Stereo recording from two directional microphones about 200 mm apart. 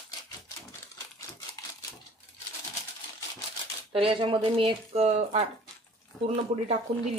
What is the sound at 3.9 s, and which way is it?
Speech, 25° right (ahead or behind).